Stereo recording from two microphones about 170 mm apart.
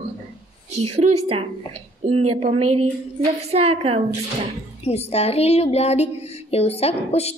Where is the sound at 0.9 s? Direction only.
35° right (ahead or behind).